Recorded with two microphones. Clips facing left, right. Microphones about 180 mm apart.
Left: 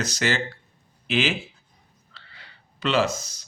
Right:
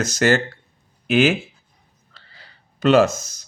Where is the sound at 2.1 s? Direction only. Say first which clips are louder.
Even; 40° right (ahead or behind).